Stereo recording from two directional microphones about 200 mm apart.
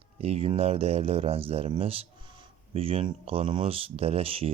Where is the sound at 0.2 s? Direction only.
30° right (ahead or behind).